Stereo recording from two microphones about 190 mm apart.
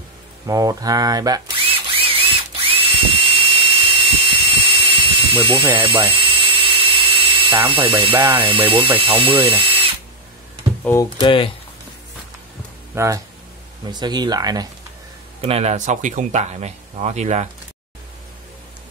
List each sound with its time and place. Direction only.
0.5 s a sound: 20° right (ahead or behind)
4.7 s drill: 30° right (ahead or behind)
8.2 s speech: 25° right (ahead or behind)
10.8 s speech: 10° left (ahead or behind)
11.1 s speech: 25° left (ahead or behind)
12.9 s speech: 15° right (ahead or behind)
15.4 s speech: 35° right (ahead or behind)